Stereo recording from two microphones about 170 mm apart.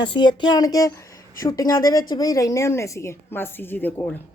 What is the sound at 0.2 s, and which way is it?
Speech, 25° left (ahead or behind).